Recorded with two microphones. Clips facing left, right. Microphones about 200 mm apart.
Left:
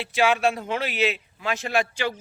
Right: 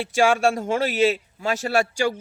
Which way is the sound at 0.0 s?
45° right (ahead or behind).